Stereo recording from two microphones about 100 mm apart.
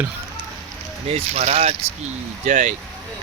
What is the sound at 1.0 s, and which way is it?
Speech, 90° right.